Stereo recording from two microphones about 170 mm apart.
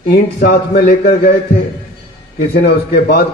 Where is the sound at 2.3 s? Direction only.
70° left (ahead or behind).